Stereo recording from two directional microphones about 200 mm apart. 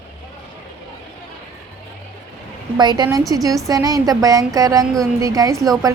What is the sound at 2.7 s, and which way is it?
A woman's voice, 20° right (ahead or behind).